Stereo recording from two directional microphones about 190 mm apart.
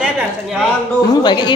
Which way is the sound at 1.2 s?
20° left (ahead or behind).